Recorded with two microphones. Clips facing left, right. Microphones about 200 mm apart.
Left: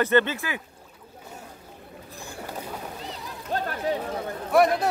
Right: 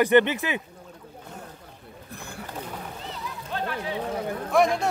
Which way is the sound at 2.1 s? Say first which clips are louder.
Even; 60° right (ahead or behind).